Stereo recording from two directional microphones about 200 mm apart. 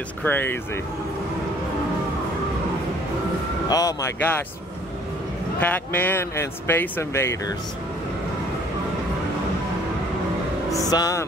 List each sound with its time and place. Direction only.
0.2 s speech: 10° left (ahead or behind)
3.6 s speech: 15° left (ahead or behind)
5.6 s speech: 10° left (ahead or behind)
10.7 s speech: 20° left (ahead or behind)